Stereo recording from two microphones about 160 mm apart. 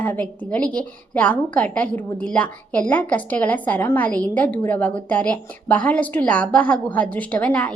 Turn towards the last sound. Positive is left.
turn(degrees=5)  # may be behind; listen again after turning